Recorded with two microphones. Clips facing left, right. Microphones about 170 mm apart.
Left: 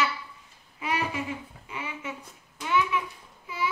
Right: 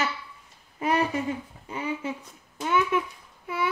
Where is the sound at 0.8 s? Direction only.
40° right (ahead or behind).